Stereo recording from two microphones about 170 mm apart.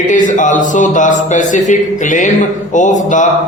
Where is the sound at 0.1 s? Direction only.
50° left (ahead or behind).